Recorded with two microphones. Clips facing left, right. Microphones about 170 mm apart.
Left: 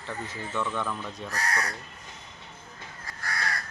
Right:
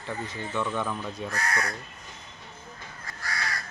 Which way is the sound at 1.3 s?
35° left (ahead or behind).